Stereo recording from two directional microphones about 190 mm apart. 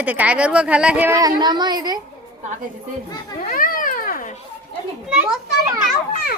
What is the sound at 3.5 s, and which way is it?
Cat, 45° left (ahead or behind).